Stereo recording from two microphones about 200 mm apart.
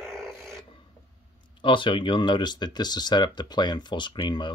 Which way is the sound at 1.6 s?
25° left (ahead or behind).